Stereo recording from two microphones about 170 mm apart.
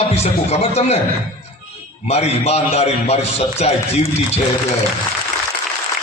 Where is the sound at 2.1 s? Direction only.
40° left (ahead or behind).